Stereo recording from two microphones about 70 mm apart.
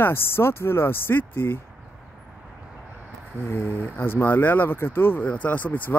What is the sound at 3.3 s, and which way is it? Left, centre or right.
Speech, left.